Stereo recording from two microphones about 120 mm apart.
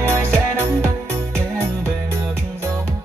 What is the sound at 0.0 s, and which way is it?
Music, 20° right (ahead or behind).